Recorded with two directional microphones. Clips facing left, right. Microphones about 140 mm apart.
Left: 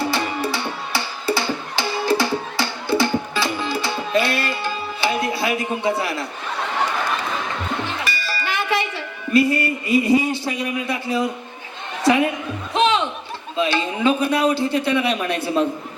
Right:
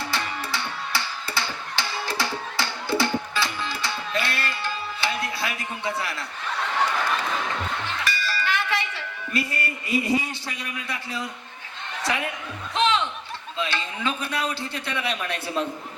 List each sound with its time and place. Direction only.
0.0 s music: 15° left (ahead or behind)
7.7 s a sound: 20° left (ahead or behind)
12.0 s a woman's voice: 20° left (ahead or behind)
12.7 s music: 15° left (ahead or behind)
13.6 s a man's voice: 15° left (ahead or behind)